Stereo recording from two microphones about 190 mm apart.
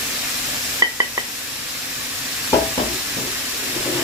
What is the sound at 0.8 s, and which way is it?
Stir, 20° right (ahead or behind).